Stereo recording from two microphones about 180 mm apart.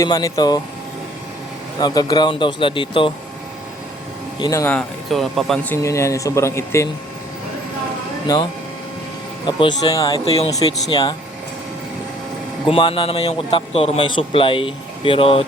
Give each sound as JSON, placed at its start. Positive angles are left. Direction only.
{"t": 0.0, "sound": "a man's voice", "side_deg": 20}
{"t": 1.8, "sound": "a man's voice", "side_deg": 20}
{"t": 4.4, "sound": "speech", "side_deg": 20}
{"t": 5.7, "sound": "speech", "side_deg": 15}
{"t": 8.3, "sound": "a man's voice", "side_deg": 20}
{"t": 9.5, "sound": "a man's voice", "side_deg": 25}
{"t": 12.6, "sound": "a man's voice", "side_deg": 30}